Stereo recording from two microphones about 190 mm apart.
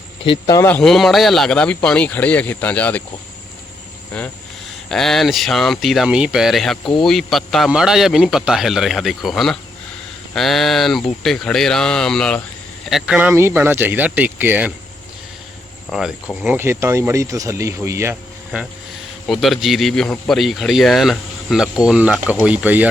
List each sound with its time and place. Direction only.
0.3 s speech: 20° left (ahead or behind)
0.7 s speech: centre (ahead or behind)
4.1 s speech: 5° left (ahead or behind)
15.9 s speech: centre (ahead or behind)
16.6 s speech: 15° right (ahead or behind)